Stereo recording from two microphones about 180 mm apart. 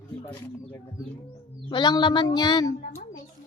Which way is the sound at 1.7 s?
25° left (ahead or behind).